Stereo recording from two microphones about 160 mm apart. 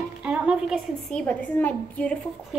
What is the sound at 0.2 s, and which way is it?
Music, 5° right (ahead or behind).